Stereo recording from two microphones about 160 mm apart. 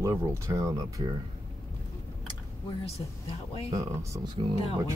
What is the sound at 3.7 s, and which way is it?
Speech, 20° right (ahead or behind).